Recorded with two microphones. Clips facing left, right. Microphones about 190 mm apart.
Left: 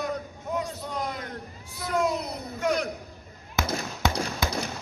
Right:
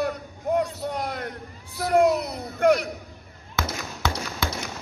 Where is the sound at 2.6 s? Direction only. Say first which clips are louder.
Right 8 dB; 60° right (ahead or behind).